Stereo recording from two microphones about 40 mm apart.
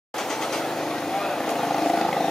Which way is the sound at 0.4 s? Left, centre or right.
Centre.